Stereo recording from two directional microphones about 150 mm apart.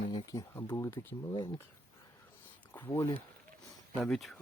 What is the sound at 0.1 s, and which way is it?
Speech, 30° left (ahead or behind).